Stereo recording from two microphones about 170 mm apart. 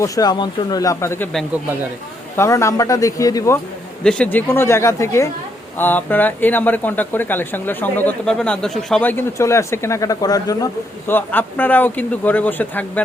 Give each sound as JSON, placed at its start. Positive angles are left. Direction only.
{"t": 0.0, "sound": "a man's voice", "side_deg": 25}
{"t": 2.3, "sound": "a man's voice", "side_deg": 15}
{"t": 4.0, "sound": "speech", "side_deg": 5}
{"t": 11.1, "sound": "speech", "side_deg": 10}